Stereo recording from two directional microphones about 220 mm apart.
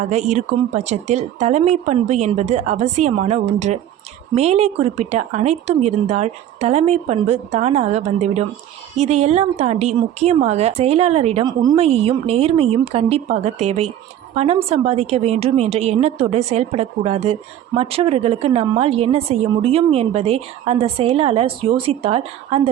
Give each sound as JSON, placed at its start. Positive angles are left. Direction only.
{"t": 0.1, "sound": "a woman's voice", "side_deg": -30}
{"t": 11.6, "sound": "a woman's voice", "side_deg": -15}
{"t": 11.9, "sound": "a woman's voice", "side_deg": -25}